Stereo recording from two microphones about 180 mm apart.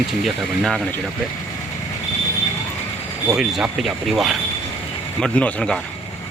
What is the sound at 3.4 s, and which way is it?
Speech, 5° right (ahead or behind).